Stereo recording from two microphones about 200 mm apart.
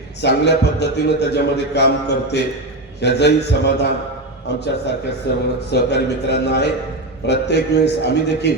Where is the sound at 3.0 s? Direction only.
60° left (ahead or behind).